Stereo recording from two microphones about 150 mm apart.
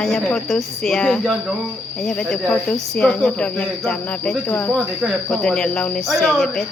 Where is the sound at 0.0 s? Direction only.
Centre (ahead or behind).